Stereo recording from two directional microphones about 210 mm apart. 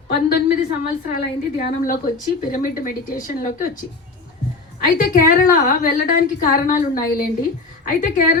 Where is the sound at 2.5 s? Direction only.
40° left (ahead or behind).